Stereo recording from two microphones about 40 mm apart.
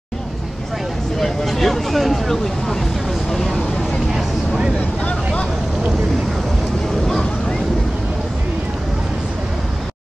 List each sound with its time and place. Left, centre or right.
1.2 s speech: centre
5.0 s vehicle: left